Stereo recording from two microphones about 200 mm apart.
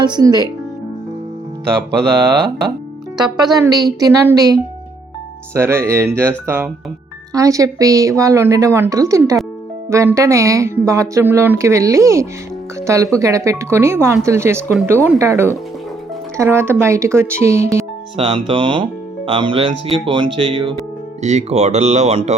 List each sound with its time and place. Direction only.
0.0 s speech: 20° right (ahead or behind)
3.3 s a woman's voice: 20° right (ahead or behind)
18.2 s speech: 25° right (ahead or behind)